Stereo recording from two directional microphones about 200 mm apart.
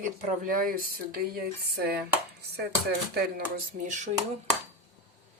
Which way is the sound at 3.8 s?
40° right (ahead or behind).